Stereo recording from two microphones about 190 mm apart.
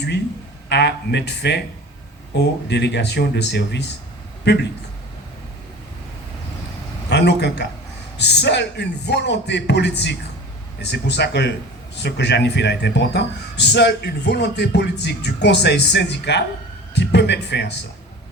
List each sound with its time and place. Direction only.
0.7 s speech: 60° left (ahead or behind)
7.1 s a man's voice: 60° left (ahead or behind)